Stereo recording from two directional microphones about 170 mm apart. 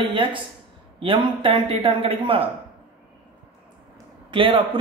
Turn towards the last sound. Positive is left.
turn(degrees=-30)  # may be behind; listen again after turning